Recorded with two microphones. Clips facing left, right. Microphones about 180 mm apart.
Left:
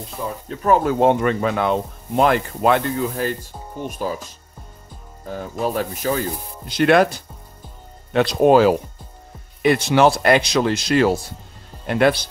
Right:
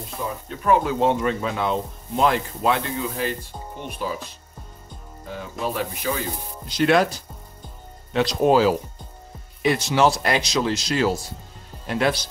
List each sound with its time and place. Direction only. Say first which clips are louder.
0.5 s speech: left 3 dB; 45° left (ahead or behind)
5.3 s speech: left 5 dB; 45° left (ahead or behind)
6.7 s speech: left 3 dB; 60° left (ahead or behind)